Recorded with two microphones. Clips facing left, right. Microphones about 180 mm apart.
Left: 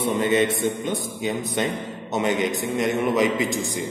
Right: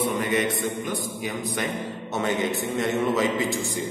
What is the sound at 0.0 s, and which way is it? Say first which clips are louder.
A man's voice: left 4 dB; 25° left (ahead or behind).